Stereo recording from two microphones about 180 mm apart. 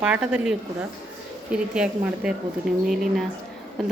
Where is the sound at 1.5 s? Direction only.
5° right (ahead or behind).